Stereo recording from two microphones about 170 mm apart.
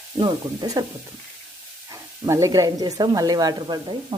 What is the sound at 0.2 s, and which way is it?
Speech, 25° right (ahead or behind).